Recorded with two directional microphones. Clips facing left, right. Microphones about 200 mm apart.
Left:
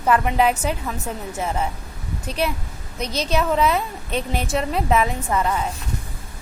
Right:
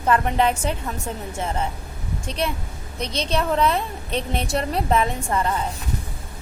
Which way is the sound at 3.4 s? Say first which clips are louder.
Left 1 dB; 5° left (ahead or behind).